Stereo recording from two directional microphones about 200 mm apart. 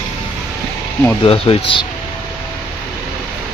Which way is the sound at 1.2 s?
30° left (ahead or behind).